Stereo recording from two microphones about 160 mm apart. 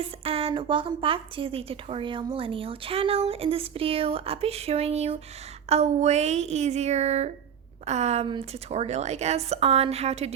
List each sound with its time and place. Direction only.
0.0 s a woman's voice: 35° right (ahead or behind)